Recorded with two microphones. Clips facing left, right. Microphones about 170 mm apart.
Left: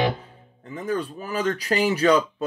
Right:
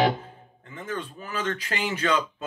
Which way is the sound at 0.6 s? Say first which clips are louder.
Left 7 dB; 40° left (ahead or behind).